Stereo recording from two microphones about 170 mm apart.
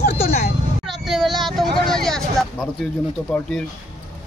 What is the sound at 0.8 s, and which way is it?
Child singing, centre (ahead or behind).